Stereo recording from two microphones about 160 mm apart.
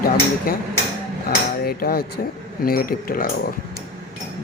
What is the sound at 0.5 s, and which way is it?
Speech, 70° left (ahead or behind).